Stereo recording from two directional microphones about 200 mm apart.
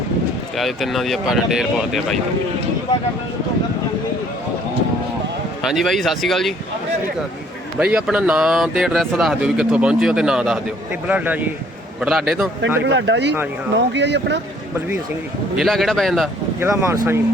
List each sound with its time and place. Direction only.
0.5 s speech: centre (ahead or behind)
5.6 s speech: centre (ahead or behind)
7.8 s speech: 5° right (ahead or behind)
12.8 s speech: 65° right (ahead or behind)
15.5 s speech: centre (ahead or behind)
16.6 s speech: 15° right (ahead or behind)